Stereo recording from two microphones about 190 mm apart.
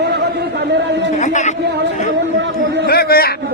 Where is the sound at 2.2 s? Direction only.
65° right (ahead or behind).